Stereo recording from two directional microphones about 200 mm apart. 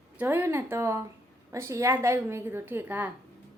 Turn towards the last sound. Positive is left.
turn(degrees=-10)  # may be behind; listen again after turning